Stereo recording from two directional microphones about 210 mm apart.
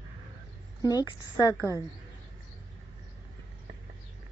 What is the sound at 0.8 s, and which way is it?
A woman's voice, 20° left (ahead or behind).